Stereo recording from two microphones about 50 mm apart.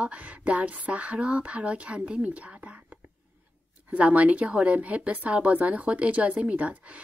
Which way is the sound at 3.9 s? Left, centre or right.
Right.